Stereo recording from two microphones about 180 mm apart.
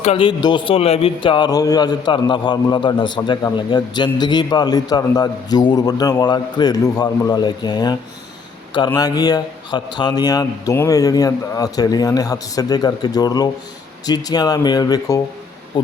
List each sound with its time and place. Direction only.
0.0 s a man's voice: 30° left (ahead or behind)